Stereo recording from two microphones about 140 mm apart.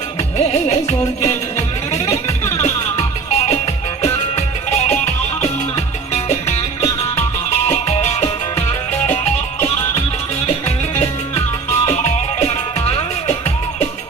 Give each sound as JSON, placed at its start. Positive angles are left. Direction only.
{"t": 0.3, "sound": "music", "side_deg": 50}
{"t": 10.4, "sound": "music", "side_deg": 45}